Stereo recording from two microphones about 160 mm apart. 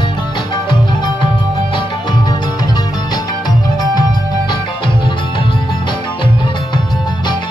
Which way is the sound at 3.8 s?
25° left (ahead or behind).